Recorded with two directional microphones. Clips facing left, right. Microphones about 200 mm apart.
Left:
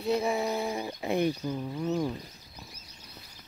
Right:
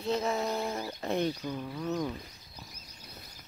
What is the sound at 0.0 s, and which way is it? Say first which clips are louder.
Speech: left 3 dB; 10° left (ahead or behind).